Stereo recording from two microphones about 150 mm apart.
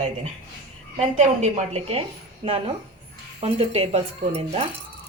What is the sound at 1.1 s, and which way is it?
Ratchet, 45° right (ahead or behind).